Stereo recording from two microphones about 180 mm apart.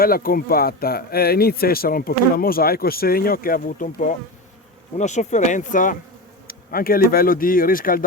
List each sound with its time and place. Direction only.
0.0 s speech: 55° left (ahead or behind)